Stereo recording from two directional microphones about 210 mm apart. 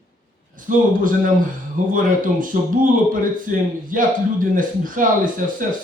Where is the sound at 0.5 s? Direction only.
40° right (ahead or behind).